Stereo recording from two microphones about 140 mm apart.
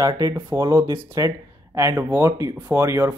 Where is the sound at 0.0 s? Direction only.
25° right (ahead or behind).